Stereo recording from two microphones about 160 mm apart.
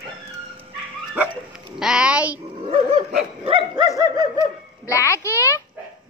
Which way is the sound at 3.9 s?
25° right (ahead or behind).